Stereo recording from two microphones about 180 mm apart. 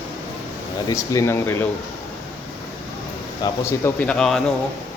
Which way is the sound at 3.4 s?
20° left (ahead or behind).